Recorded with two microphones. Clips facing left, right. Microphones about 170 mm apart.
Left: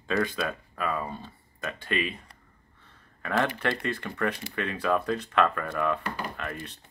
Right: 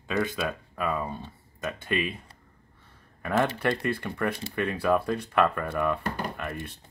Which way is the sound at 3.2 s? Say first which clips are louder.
Right 2 dB; 10° right (ahead or behind).